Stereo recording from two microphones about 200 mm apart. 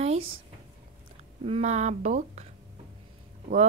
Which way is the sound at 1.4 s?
35° right (ahead or behind).